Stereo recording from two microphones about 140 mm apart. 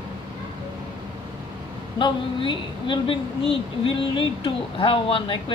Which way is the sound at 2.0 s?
35° left (ahead or behind).